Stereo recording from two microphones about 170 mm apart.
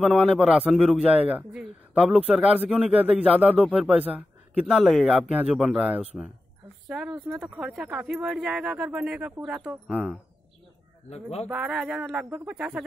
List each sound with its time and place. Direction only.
0.0 s a man's voice: 5° right (ahead or behind)
11.1 s speech: 40° left (ahead or behind)
11.5 s speech: 5° right (ahead or behind)